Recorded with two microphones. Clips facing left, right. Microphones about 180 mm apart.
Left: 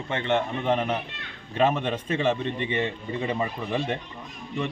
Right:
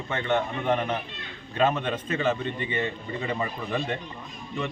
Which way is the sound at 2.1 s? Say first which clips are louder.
Left 2 dB; 30° left (ahead or behind).